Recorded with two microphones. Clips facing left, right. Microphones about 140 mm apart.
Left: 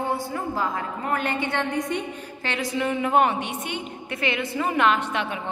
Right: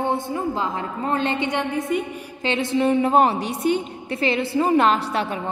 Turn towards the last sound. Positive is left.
turn(degrees=-35)  # may be behind; listen again after turning